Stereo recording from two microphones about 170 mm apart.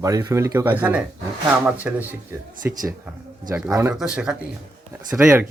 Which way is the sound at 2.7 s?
20° right (ahead or behind).